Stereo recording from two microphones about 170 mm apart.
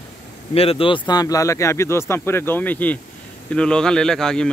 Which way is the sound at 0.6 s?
35° left (ahead or behind).